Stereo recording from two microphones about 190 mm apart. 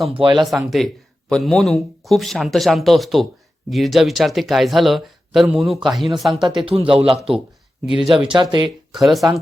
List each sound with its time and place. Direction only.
0.2 s speech: 25° right (ahead or behind)
0.4 s speech: centre (ahead or behind)
6.7 s speech: 30° right (ahead or behind)
7.9 s speech: centre (ahead or behind)
8.3 s speech: 25° right (ahead or behind)
8.9 s speech: centre (ahead or behind)